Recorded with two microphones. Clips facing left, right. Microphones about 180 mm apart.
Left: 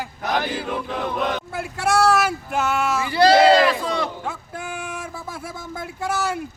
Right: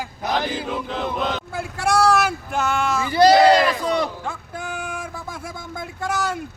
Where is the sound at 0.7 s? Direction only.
10° left (ahead or behind).